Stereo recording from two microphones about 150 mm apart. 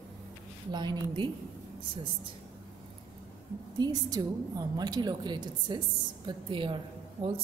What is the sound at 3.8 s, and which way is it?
A woman's voice, 25° right (ahead or behind).